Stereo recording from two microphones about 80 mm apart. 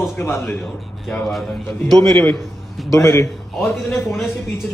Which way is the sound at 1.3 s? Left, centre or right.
Centre.